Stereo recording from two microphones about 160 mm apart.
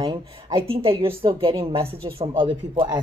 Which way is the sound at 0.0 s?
30° right (ahead or behind).